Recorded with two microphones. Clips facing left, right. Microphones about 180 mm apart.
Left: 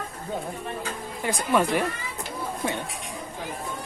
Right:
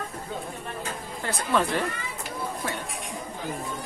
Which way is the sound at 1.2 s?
15° left (ahead or behind).